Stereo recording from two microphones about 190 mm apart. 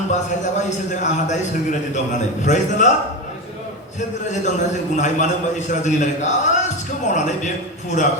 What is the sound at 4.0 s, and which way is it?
A man's voice, 40° left (ahead or behind).